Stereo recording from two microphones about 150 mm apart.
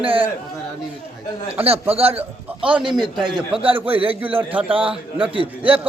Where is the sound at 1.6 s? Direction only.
40° right (ahead or behind).